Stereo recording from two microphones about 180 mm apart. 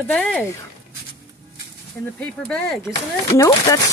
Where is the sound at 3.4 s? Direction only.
20° left (ahead or behind).